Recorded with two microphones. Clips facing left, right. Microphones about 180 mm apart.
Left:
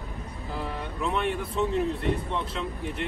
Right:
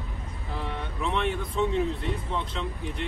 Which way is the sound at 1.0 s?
5° left (ahead or behind).